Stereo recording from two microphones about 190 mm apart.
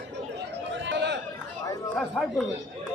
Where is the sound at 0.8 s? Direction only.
70° right (ahead or behind).